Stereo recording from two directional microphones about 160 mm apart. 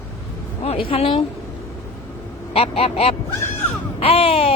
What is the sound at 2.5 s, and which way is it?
Speech, 35° left (ahead or behind).